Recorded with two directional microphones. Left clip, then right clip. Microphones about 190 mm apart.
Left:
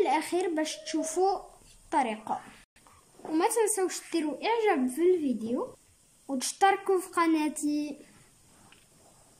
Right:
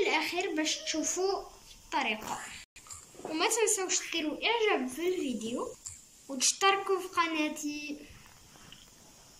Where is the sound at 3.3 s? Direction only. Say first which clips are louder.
Left 3 dB; 45° left (ahead or behind).